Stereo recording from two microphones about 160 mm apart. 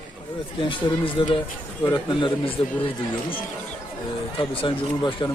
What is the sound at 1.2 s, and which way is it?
Speech, 30° left (ahead or behind).